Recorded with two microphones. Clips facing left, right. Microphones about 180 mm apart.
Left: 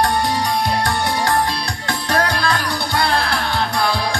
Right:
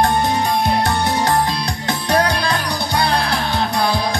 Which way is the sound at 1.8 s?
20° right (ahead or behind).